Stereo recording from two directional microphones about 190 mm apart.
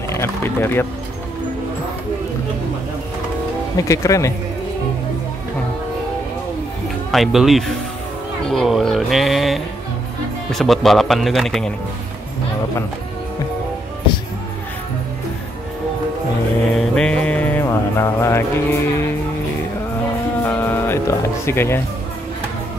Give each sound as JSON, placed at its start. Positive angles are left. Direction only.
{"t": 0.1, "sound": "speech", "side_deg": 15}
{"t": 3.7, "sound": "speech", "side_deg": 15}
{"t": 7.1, "sound": "speech", "side_deg": 0}
{"t": 16.7, "sound": "music", "side_deg": 5}
{"t": 20.4, "sound": "music", "side_deg": 10}